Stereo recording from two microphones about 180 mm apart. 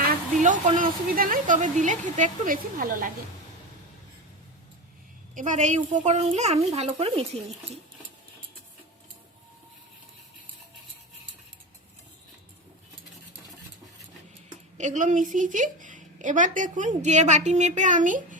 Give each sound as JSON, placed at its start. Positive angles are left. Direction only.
{"t": 0.4, "sound": "a woman's voice", "side_deg": -45}
{"t": 5.3, "sound": "a woman's voice", "side_deg": -45}
{"t": 14.8, "sound": "a woman's voice", "side_deg": -45}